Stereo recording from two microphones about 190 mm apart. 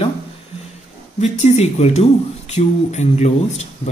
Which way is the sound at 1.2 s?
35° left (ahead or behind).